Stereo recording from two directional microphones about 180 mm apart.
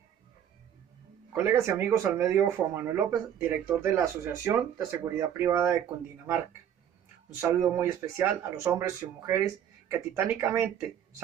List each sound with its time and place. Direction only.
1.3 s speech: 15° right (ahead or behind)